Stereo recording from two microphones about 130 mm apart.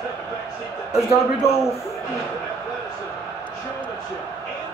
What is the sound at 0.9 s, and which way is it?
Speech, 20° left (ahead or behind).